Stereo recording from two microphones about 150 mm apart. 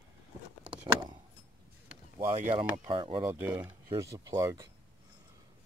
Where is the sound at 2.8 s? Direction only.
35° right (ahead or behind).